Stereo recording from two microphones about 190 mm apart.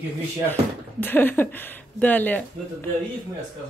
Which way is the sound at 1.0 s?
10° left (ahead or behind).